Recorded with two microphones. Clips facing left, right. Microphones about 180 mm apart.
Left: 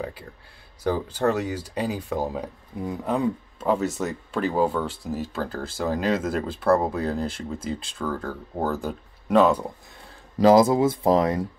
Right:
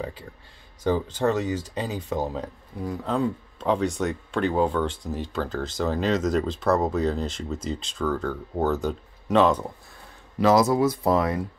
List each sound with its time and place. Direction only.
0.8 s speech: 10° left (ahead or behind)
10.4 s speech: 30° left (ahead or behind)